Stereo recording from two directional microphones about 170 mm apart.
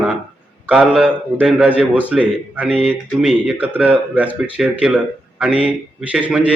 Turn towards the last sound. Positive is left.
turn(degrees=-5)  # may be behind; listen again after turning